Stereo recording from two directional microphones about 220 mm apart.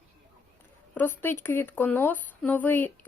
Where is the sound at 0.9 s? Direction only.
10° left (ahead or behind).